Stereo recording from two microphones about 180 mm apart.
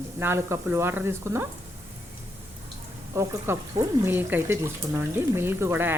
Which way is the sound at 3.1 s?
15° right (ahead or behind).